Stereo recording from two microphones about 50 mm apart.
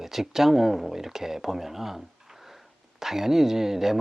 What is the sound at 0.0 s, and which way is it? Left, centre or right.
Speech, centre.